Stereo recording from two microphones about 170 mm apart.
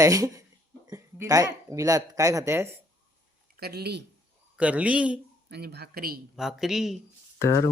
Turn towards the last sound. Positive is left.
turn(degrees=15)  # may be behind; listen again after turning